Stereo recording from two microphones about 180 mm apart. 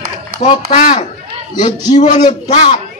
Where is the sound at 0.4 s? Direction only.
40° left (ahead or behind).